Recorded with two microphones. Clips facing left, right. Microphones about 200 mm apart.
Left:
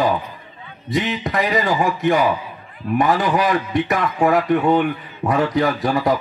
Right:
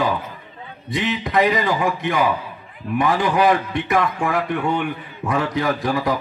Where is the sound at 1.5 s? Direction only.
45° left (ahead or behind).